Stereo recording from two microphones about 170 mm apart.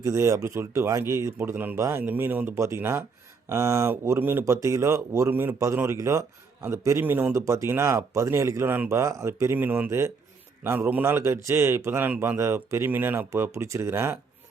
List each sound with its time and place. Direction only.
0.0 s speech: 20° right (ahead or behind)